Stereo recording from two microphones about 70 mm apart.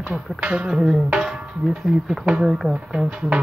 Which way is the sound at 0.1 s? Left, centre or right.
Centre.